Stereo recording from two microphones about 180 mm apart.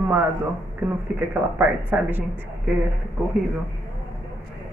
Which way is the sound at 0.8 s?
10° right (ahead or behind).